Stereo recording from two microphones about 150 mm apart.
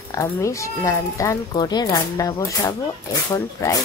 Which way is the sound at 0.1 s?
20° left (ahead or behind).